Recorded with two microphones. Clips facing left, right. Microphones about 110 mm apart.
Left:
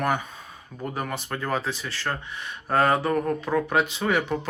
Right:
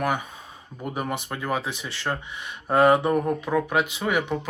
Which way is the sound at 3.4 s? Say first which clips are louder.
Even; 5° right (ahead or behind).